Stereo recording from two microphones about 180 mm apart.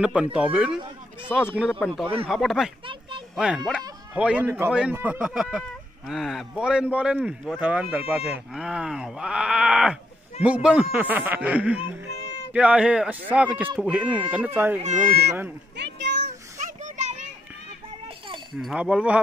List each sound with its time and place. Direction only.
0.0 s speech: 5° right (ahead or behind)
1.8 s speech: 5° left (ahead or behind)
2.9 s a sound: 25° right (ahead or behind)
3.3 s speech: 5° right (ahead or behind)
14.8 s speech: 45° right (ahead or behind)
15.7 s a sound: 70° right (ahead or behind)
16.5 s children playing: 45° right (ahead or behind)
18.6 s speech: 5° right (ahead or behind)